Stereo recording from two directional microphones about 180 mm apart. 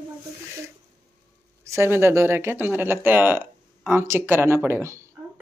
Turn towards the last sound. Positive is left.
turn(degrees=-15)  # may be behind; listen again after turning